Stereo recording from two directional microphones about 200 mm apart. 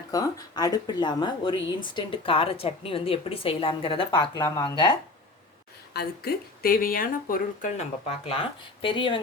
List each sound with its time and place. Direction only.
0.1 s speech: 20° left (ahead or behind)
5.9 s speech: 55° left (ahead or behind); by 9.2 s 25° left (ahead or behind)